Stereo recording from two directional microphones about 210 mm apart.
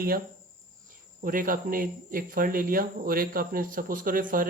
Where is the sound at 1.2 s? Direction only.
40° right (ahead or behind).